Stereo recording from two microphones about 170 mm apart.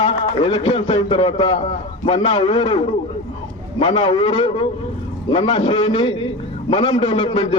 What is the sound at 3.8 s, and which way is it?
A man's voice, 35° left (ahead or behind).